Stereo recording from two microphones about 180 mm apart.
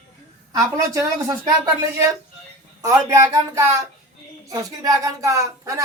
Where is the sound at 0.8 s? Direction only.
20° right (ahead or behind).